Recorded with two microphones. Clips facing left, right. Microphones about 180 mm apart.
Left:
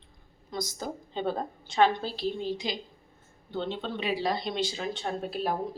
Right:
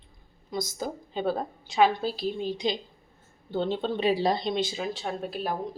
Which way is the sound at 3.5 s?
40° right (ahead or behind).